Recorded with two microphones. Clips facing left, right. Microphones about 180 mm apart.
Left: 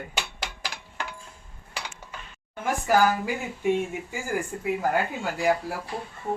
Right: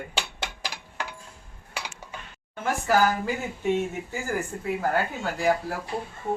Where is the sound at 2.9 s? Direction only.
10° left (ahead or behind).